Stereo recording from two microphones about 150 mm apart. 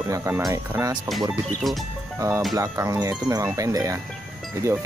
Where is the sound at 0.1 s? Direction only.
20° right (ahead or behind).